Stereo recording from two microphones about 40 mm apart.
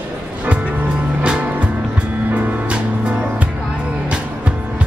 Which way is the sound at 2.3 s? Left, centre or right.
Right.